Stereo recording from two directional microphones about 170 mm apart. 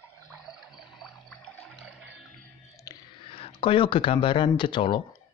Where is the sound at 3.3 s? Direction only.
35° left (ahead or behind).